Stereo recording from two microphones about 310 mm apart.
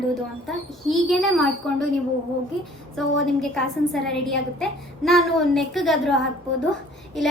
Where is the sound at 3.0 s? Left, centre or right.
Centre.